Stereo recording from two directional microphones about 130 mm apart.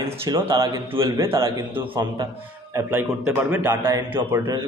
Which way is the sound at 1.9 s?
35° right (ahead or behind).